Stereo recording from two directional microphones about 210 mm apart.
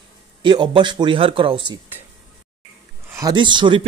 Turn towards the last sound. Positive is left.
turn(degrees=-20)  # may be behind; listen again after turning